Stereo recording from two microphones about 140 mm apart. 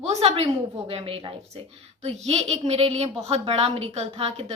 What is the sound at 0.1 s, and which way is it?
A woman's voice, 45° right (ahead or behind).